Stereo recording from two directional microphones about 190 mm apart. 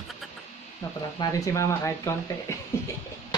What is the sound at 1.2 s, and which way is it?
Speech, 15° left (ahead or behind).